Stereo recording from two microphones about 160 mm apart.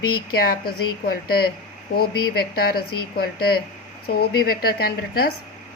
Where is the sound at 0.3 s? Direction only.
65° left (ahead or behind).